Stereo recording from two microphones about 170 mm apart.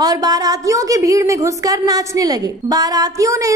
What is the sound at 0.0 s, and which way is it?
A woman's voice, 20° right (ahead or behind).